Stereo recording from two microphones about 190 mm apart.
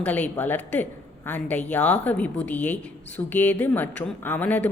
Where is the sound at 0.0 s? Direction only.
10° left (ahead or behind).